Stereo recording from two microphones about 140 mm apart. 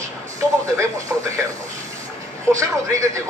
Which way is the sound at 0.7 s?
20° right (ahead or behind).